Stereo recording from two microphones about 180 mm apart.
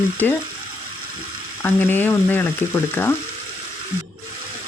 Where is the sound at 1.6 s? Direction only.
10° left (ahead or behind).